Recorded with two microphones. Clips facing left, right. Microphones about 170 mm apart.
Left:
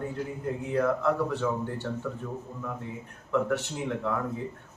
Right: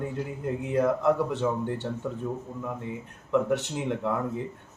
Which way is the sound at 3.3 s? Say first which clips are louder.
Right 2 dB; 20° right (ahead or behind).